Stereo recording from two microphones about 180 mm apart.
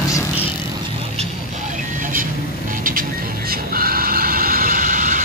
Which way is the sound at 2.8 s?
50° right (ahead or behind).